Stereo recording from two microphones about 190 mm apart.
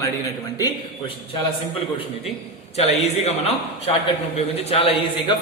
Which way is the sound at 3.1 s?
35° left (ahead or behind).